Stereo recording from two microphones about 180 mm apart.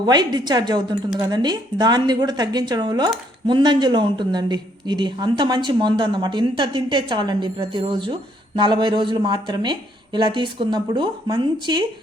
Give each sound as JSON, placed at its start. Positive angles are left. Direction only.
{"t": 0.0, "sound": "a woman's voice", "side_deg": -25}